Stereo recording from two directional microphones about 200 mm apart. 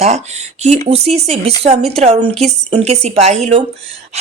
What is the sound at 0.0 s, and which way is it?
A woman's voice, 35° right (ahead or behind).